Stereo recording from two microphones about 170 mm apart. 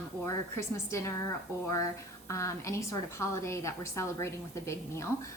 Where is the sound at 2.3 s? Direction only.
15° left (ahead or behind).